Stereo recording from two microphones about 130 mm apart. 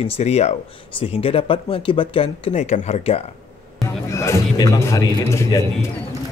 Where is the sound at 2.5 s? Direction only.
65° left (ahead or behind).